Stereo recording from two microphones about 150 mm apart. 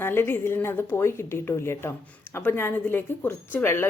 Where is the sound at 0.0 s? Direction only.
15° left (ahead or behind).